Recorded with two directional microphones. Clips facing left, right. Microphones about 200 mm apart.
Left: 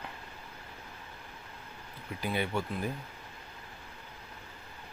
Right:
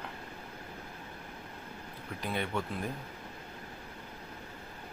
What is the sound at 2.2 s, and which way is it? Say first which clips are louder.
Speech: left 2 dB; 5° left (ahead or behind).